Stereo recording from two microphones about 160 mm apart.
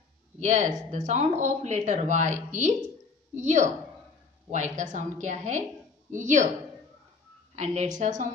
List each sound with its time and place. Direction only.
0.4 s a woman's voice: 50° right (ahead or behind)
7.5 s a woman's voice: 45° right (ahead or behind)